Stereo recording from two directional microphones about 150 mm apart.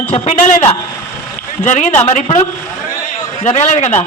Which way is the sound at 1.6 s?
55° left (ahead or behind).